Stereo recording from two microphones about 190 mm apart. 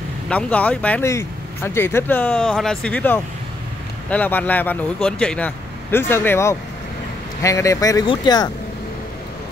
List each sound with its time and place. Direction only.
0.3 s speech: 5° left (ahead or behind); by 8.5 s 20° left (ahead or behind)